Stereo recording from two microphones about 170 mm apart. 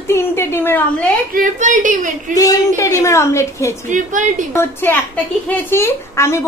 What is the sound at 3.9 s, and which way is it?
Speech, 50° right (ahead or behind).